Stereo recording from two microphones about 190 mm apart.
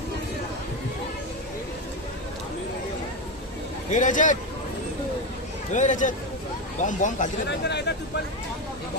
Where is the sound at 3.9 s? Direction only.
40° left (ahead or behind).